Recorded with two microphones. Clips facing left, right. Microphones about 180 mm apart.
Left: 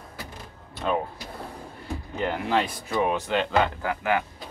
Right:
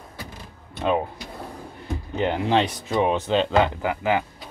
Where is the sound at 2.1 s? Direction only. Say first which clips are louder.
Right 4 dB; 25° right (ahead or behind).